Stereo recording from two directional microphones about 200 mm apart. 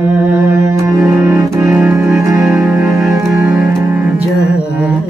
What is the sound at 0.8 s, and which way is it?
Music, 5° right (ahead or behind).